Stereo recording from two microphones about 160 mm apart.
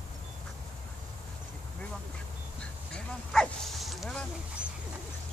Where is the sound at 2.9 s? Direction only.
5° left (ahead or behind).